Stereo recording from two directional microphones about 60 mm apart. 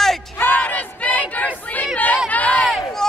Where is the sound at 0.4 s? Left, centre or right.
Left.